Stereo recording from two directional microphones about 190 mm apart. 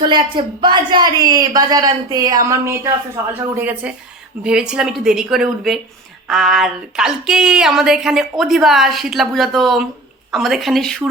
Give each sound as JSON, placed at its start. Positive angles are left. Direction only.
{"t": 0.0, "sound": "a woman's voice", "side_deg": -25}